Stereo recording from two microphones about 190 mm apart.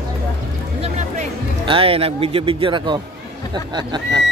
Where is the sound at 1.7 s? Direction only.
30° right (ahead or behind).